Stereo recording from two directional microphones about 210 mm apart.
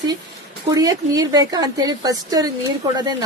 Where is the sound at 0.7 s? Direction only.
20° right (ahead or behind).